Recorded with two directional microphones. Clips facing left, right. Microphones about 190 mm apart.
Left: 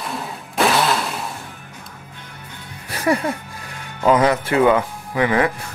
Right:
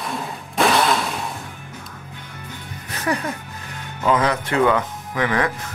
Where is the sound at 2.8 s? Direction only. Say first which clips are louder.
Left 4 dB; 10° left (ahead or behind).